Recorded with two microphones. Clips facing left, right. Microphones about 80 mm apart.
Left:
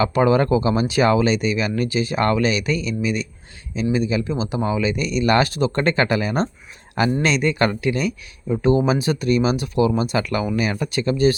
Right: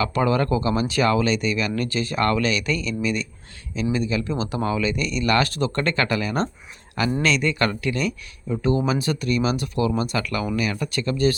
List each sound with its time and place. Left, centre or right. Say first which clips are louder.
0.0 s speech: left 4 dB; left
8.6 s speech: left 4 dB; left